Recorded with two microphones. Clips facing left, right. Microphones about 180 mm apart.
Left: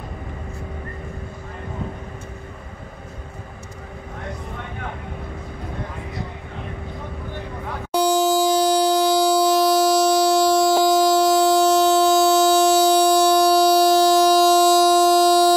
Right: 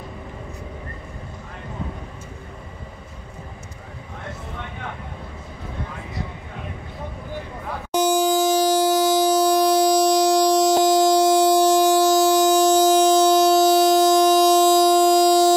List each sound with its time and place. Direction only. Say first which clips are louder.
7.9 s music: left 1 dB; 20° right (ahead or behind)